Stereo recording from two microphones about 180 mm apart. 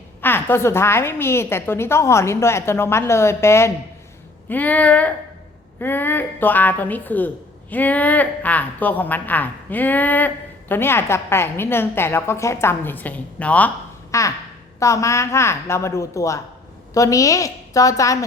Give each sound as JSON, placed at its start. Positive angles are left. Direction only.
{"t": 0.2, "sound": "a woman's voice", "side_deg": 10}
{"t": 14.1, "sound": "a sound", "side_deg": 15}
{"t": 14.8, "sound": "a woman's voice", "side_deg": 15}